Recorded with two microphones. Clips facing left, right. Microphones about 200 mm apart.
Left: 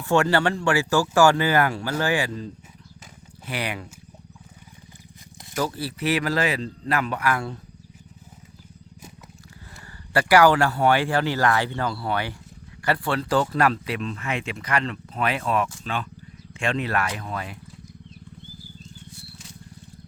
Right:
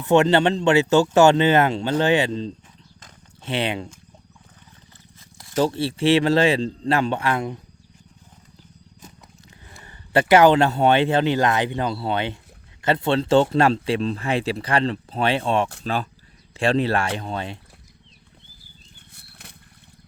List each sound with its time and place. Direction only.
0.0 s speech: 20° right (ahead or behind)
5.5 s speech: 25° right (ahead or behind)
10.1 s speech: 20° right (ahead or behind)
18.9 s a sound: 60° right (ahead or behind)